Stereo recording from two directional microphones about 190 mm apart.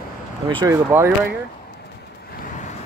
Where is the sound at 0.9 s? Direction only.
15° right (ahead or behind).